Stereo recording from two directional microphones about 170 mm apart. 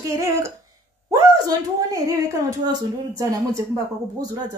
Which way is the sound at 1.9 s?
20° right (ahead or behind).